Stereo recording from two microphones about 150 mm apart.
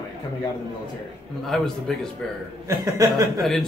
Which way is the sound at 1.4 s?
Centre (ahead or behind).